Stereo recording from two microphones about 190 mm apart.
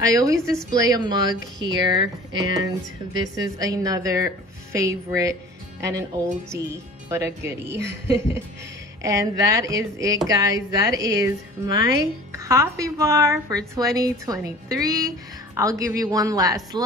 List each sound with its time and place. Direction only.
0.1 s a woman's voice: 15° right (ahead or behind)
7.1 s a woman's voice: 15° right (ahead or behind)
9.0 s a woman's voice: 15° right (ahead or behind)